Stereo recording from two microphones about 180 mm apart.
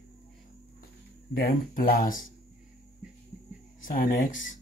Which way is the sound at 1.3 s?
50° left (ahead or behind).